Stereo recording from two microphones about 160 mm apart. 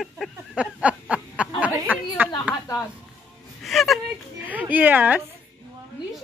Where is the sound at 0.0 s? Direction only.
5° right (ahead or behind).